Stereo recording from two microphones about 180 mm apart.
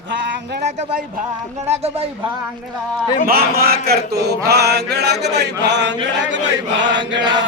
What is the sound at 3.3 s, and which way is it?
A man's voice, 55° right (ahead or behind).